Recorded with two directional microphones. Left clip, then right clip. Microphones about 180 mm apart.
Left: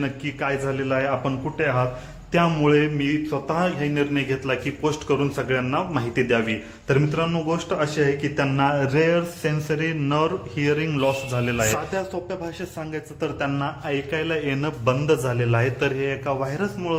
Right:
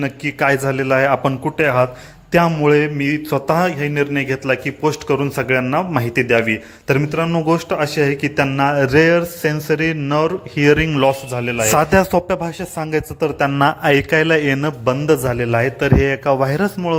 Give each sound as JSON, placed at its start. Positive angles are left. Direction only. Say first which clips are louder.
{"t": 0.0, "sound": "a man's voice", "louder": "right 9 dB", "side_deg": -45}
{"t": 2.3, "sound": "mantra", "louder": "right 6 dB", "side_deg": -40}
{"t": 10.8, "sound": "a man's voice", "louder": "right 7 dB", "side_deg": -30}
{"t": 11.8, "sound": "a man's voice", "louder": "right 14 dB", "side_deg": -50}
{"t": 13.6, "sound": "mantra", "louder": "right 13 dB", "side_deg": -55}